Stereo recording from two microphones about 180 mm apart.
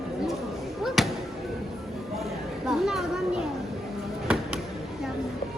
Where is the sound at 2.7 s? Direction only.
Centre (ahead or behind).